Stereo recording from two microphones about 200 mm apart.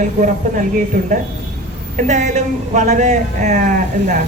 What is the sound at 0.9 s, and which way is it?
Speech, 40° right (ahead or behind).